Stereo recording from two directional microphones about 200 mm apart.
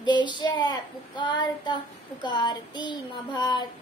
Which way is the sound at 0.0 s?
25° left (ahead or behind).